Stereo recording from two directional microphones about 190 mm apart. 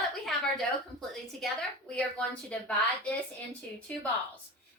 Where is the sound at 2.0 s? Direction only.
5° left (ahead or behind).